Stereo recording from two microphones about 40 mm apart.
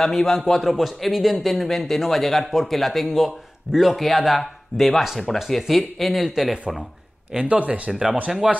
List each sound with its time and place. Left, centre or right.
0.0 s a man's voice: centre
7.3 s speech: right
8.4 s speech: centre